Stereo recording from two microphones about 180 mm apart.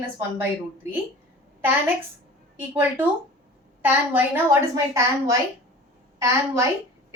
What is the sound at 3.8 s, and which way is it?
A woman's voice, 10° right (ahead or behind).